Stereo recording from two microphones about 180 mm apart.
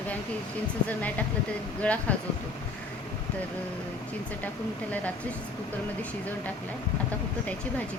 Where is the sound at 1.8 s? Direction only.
5° left (ahead or behind).